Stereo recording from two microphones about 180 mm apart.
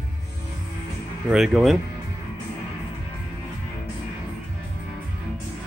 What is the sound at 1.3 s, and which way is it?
Speech, centre (ahead or behind).